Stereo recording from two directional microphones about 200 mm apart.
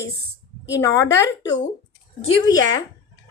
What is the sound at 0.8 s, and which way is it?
A woman's voice, 15° left (ahead or behind).